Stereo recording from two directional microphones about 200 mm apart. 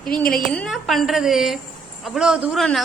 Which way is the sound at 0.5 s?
5° left (ahead or behind).